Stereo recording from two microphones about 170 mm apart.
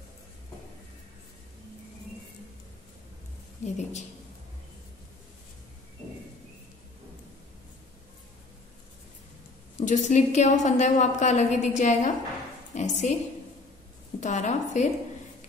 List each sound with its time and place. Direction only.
3.6 s a woman's voice: 45° left (ahead or behind)
9.8 s a woman's voice: 45° left (ahead or behind)
14.2 s a woman's voice: 45° left (ahead or behind)